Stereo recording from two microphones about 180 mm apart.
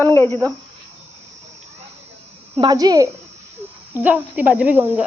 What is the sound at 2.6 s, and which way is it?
Speech, 20° right (ahead or behind).